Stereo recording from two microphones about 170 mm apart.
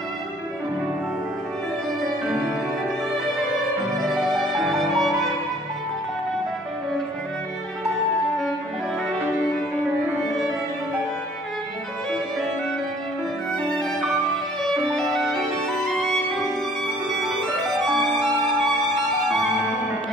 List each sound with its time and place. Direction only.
4.0 s music: centre (ahead or behind)
13.6 s music: 5° left (ahead or behind)
17.8 s music: centre (ahead or behind)